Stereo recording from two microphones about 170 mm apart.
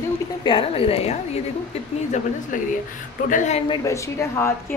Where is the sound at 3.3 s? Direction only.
45° left (ahead or behind).